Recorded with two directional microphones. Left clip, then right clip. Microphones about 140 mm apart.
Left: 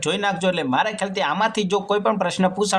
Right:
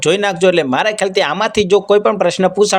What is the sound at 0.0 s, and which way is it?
Speech, 45° right (ahead or behind).